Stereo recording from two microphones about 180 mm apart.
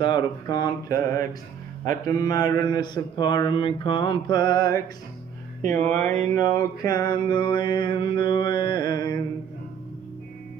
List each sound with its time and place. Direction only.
0.0 s mantra: 25° left (ahead or behind)
5.9 s speech: 10° left (ahead or behind)
6.3 s mantra: 20° left (ahead or behind)